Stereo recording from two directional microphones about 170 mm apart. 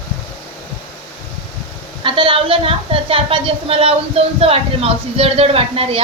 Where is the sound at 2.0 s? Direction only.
30° right (ahead or behind).